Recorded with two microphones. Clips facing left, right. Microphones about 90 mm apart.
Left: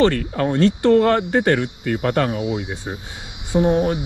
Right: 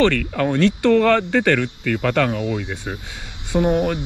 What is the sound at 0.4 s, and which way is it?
Speech, 20° left (ahead or behind).